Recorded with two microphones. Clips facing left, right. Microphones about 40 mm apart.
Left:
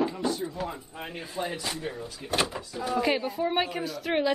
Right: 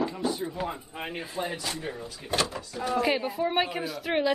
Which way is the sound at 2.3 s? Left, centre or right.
Centre.